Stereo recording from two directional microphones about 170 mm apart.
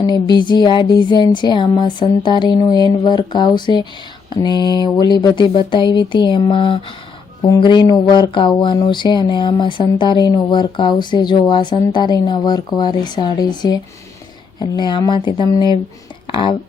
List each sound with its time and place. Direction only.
0.0 s speech: 25° left (ahead or behind)